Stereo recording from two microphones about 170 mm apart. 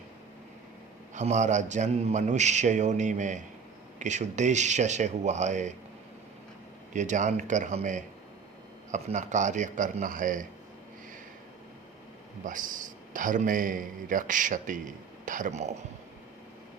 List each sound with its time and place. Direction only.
1.1 s a man's voice: 45° right (ahead or behind)
6.9 s a man's voice: 45° right (ahead or behind)
12.5 s a man's voice: 50° right (ahead or behind)